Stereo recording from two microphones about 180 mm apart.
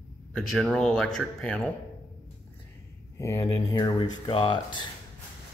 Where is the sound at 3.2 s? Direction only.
15° left (ahead or behind).